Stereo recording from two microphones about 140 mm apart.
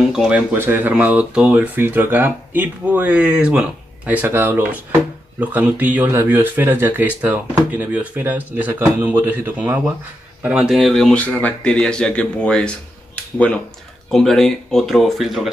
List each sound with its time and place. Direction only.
0.1 s speech: 5° right (ahead or behind)